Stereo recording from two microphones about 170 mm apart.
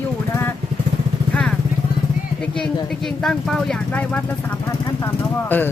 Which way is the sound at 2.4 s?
5° left (ahead or behind).